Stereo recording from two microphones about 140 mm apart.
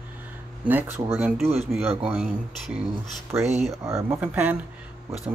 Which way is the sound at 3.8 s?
20° right (ahead or behind).